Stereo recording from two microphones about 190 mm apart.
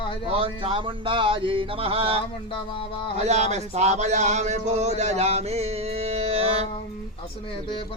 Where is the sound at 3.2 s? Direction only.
35° right (ahead or behind).